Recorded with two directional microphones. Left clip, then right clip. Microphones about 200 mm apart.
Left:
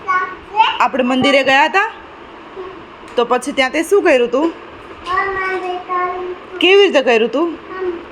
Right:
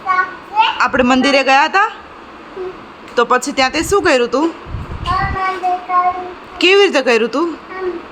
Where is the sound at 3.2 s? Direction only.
15° right (ahead or behind).